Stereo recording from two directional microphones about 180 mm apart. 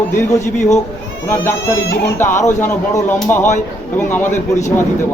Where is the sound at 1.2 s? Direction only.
15° left (ahead or behind).